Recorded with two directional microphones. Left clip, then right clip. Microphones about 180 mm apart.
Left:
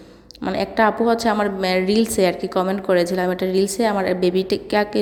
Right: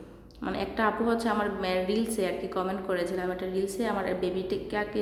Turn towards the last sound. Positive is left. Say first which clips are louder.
# left 11 dB
turn(degrees=45)  # may be behind; listen again after turning